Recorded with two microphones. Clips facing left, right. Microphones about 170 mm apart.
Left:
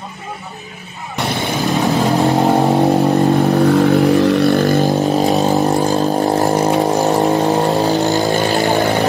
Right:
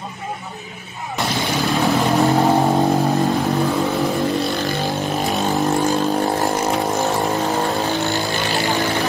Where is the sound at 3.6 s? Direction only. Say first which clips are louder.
Left 8 dB; 70° left (ahead or behind); by 8.5 s 45° left (ahead or behind).